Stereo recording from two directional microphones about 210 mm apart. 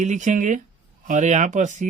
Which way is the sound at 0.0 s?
35° right (ahead or behind).